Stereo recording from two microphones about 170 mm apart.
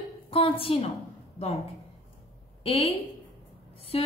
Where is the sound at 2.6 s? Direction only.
35° left (ahead or behind).